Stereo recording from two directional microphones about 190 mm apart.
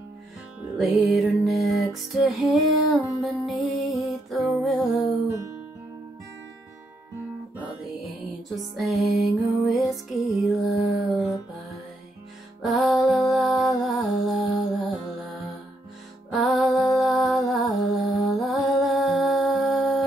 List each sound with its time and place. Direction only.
0.7 s music: centre (ahead or behind)
5.2 s music: 15° right (ahead or behind)
8.5 s music: centre (ahead or behind)
12.6 s music: centre (ahead or behind)
16.3 s music: centre (ahead or behind)